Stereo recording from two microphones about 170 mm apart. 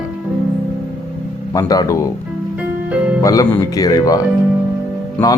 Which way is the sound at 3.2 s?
20° left (ahead or behind).